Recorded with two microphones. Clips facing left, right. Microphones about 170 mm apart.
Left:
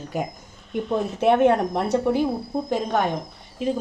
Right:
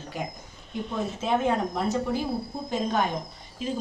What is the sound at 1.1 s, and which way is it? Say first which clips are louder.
Speech: left 8 dB; 65° left (ahead or behind).